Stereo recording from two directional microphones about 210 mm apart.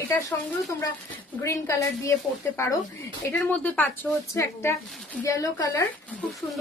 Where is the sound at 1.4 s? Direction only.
15° left (ahead or behind).